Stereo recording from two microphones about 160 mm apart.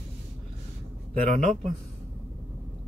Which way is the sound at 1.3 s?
45° right (ahead or behind).